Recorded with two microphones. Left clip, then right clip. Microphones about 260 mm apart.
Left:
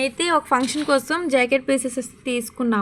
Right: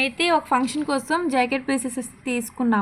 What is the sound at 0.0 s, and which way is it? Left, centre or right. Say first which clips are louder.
A woman's voice: even; centre.